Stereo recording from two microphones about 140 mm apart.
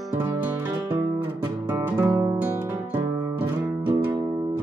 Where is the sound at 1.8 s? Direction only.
20° right (ahead or behind).